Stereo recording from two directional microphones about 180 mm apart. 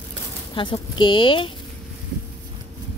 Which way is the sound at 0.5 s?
25° left (ahead or behind).